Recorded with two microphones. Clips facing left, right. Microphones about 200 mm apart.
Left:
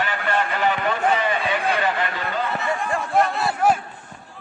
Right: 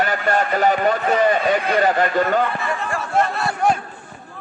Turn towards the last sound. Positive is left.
turn(degrees=5)  # may be behind; listen again after turning